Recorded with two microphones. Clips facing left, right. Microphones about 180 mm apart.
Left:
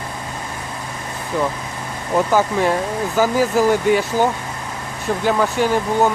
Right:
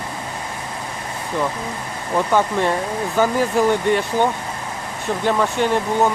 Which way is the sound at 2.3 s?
5° left (ahead or behind).